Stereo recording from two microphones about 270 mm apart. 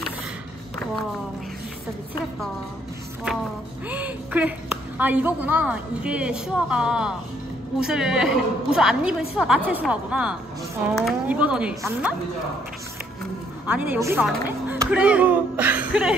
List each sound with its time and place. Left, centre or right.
3.9 s a woman's voice: centre
13.7 s a woman's voice: centre